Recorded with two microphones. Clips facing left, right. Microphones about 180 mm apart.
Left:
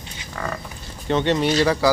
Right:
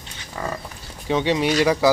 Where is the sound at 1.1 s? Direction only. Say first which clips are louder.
Left 1 dB; 10° right (ahead or behind).